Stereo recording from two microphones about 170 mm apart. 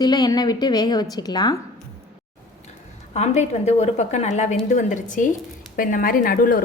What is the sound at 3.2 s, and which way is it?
A woman's voice, 40° left (ahead or behind).